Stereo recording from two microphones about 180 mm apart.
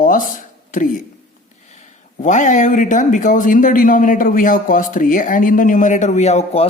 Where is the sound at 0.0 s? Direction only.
50° left (ahead or behind).